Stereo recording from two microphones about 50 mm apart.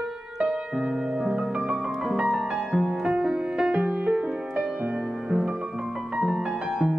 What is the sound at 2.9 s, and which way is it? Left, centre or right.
Music, centre.